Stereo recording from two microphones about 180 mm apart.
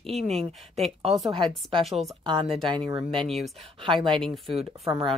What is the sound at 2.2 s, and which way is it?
Speech, 25° right (ahead or behind).